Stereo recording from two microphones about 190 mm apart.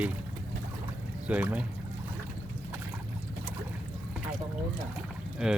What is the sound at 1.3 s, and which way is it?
Speech, 10° right (ahead or behind).